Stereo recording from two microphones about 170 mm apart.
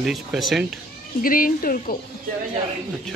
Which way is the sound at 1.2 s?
55° left (ahead or behind).